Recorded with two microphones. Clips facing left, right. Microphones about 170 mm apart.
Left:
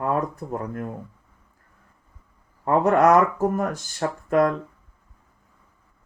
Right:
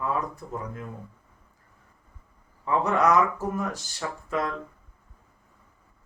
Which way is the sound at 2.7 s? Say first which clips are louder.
Left 6 dB; 55° left (ahead or behind).